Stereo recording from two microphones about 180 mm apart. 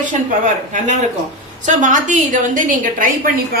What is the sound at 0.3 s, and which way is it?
Speech, 45° right (ahead or behind).